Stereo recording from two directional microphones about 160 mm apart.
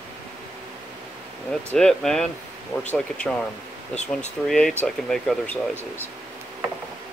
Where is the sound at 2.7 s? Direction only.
15° left (ahead or behind).